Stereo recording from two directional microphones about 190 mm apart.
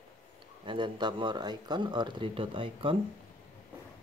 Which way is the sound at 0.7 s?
25° right (ahead or behind).